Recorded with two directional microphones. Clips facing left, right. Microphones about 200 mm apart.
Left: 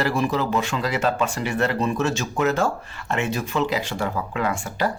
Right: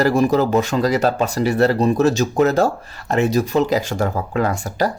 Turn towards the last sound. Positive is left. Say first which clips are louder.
# right 5 dB
turn(degrees=-40)  # may be behind; listen again after turning